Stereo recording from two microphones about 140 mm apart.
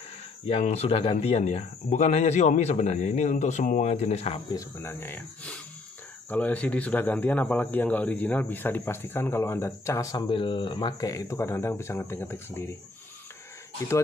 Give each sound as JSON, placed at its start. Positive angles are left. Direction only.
{"t": 0.5, "sound": "speech", "side_deg": 50}
{"t": 4.8, "sound": "speech", "side_deg": 15}